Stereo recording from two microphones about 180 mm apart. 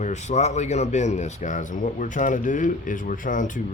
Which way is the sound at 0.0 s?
40° left (ahead or behind).